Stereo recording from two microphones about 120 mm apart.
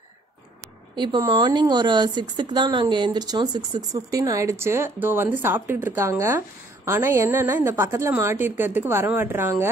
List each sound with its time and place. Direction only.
0.9 s speech: 40° right (ahead or behind); by 9.7 s 20° right (ahead or behind)